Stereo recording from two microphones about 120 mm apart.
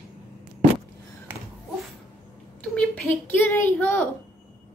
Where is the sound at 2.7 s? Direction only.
15° left (ahead or behind).